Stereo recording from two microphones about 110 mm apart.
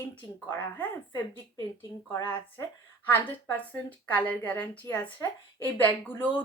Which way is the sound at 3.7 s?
15° left (ahead or behind).